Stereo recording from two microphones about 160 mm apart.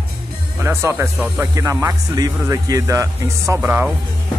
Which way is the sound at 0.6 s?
15° right (ahead or behind).